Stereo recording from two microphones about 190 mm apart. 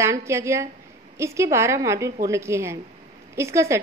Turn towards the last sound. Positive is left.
turn(degrees=-15)  # may be behind; listen again after turning